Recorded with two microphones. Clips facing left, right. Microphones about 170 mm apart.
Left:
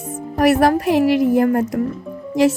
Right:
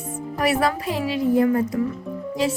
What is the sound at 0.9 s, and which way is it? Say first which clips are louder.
Speech: left 7 dB; 80° left.